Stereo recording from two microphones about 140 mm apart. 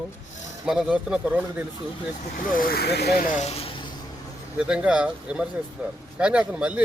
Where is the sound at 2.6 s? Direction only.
90° left.